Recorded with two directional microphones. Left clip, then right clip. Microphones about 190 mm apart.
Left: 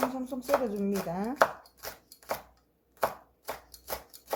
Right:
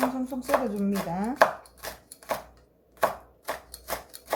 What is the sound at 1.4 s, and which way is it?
Chopping, 5° right (ahead or behind).